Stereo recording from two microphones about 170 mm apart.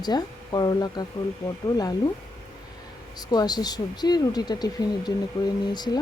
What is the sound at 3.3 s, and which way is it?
Speech, 25° left (ahead or behind).